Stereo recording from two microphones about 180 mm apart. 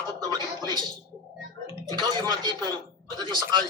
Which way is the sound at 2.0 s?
25° right (ahead or behind).